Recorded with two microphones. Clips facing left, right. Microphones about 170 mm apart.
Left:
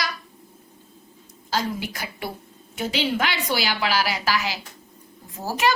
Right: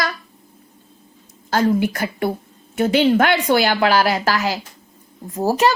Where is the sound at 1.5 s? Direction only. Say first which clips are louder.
Right 10 dB; 55° right (ahead or behind).